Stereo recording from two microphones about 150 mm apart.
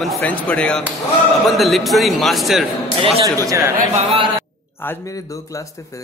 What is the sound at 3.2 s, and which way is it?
Speech, 25° right (ahead or behind).